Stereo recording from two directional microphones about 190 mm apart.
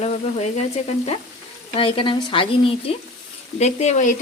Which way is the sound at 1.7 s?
30° left (ahead or behind).